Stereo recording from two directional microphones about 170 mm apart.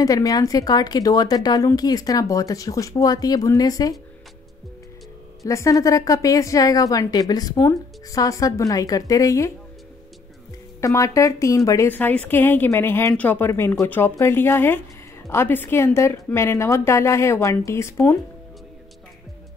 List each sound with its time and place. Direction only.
0.0 s a woman's voice: 20° left (ahead or behind)
5.4 s a woman's voice: 20° left (ahead or behind)
10.8 s a woman's voice: 20° left (ahead or behind)